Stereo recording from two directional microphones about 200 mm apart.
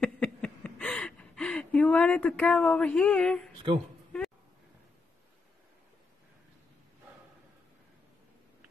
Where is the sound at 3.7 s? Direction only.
25° right (ahead or behind).